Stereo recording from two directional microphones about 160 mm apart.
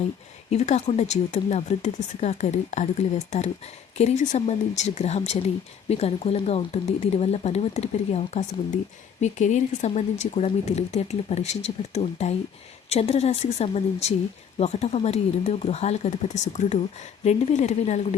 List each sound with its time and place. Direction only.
0.5 s a woman's voice: 45° left (ahead or behind)